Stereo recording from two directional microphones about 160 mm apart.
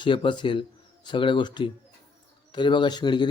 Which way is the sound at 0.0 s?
30° left (ahead or behind).